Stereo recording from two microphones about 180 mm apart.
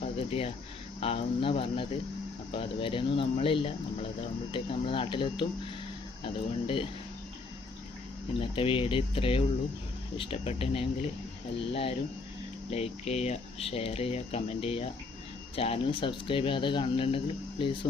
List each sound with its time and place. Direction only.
0.0 s a sound: 30° left (ahead or behind)
0.9 s speech: 35° left (ahead or behind)
8.4 s speech: 30° left (ahead or behind)